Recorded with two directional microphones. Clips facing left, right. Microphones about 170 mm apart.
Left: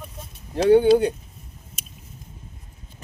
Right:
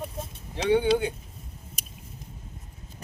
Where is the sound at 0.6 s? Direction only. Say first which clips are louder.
Left 7 dB; 45° left (ahead or behind).